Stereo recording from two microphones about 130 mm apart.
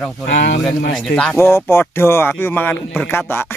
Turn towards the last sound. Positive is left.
turn(degrees=15)  # may be behind; listen again after turning